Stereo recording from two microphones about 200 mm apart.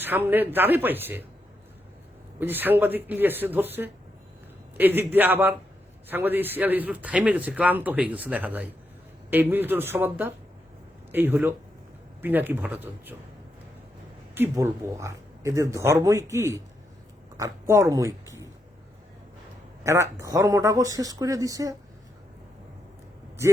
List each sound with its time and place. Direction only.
0.0 s a man's voice: 10° right (ahead or behind)
2.4 s a man's voice: 10° right (ahead or behind)
14.3 s a man's voice: 10° right (ahead or behind)
19.8 s a man's voice: 15° right (ahead or behind)